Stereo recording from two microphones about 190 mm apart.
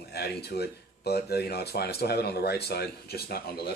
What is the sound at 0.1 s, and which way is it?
Speech, 60° left (ahead or behind).